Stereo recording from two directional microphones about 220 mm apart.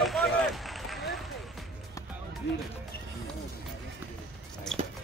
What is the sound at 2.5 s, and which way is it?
Speech, 55° left (ahead or behind).